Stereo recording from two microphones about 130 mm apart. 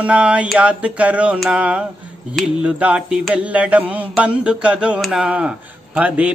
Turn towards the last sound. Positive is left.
turn(degrees=-10)  # may be behind; listen again after turning